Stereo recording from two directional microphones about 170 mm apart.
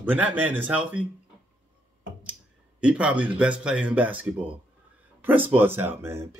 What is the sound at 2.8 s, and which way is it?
Speech, 5° right (ahead or behind).